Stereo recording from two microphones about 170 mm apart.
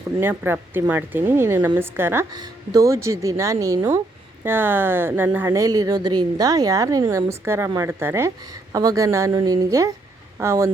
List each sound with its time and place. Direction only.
0.2 s a woman's voice: 15° right (ahead or behind)